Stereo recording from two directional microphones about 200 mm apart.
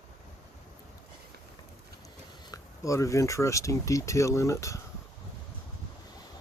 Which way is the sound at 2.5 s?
15° left (ahead or behind).